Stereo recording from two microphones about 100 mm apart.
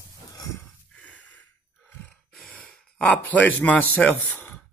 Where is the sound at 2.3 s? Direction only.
10° left (ahead or behind).